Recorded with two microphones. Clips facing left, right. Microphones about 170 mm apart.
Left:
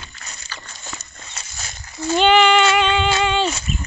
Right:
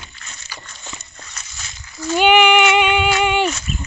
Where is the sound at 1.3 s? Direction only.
40° left (ahead or behind).